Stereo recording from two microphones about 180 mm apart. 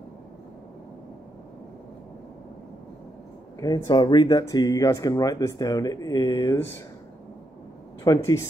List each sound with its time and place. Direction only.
3.5 s speech: 20° left (ahead or behind)
8.0 s speech: 20° left (ahead or behind)